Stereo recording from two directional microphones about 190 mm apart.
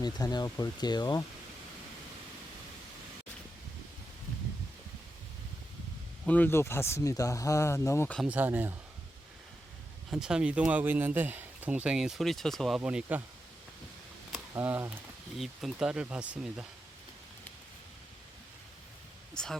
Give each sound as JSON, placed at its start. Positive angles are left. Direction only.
{"t": 0.0, "sound": "speech", "side_deg": 20}
{"t": 6.2, "sound": "speech", "side_deg": 10}
{"t": 8.2, "sound": "speech", "side_deg": -10}
{"t": 10.1, "sound": "speech", "side_deg": -5}
{"t": 14.5, "sound": "speech", "side_deg": -10}
{"t": 19.3, "sound": "speech", "side_deg": 5}